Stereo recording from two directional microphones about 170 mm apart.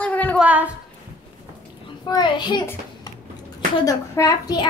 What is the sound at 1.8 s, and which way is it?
Speech, 25° left (ahead or behind).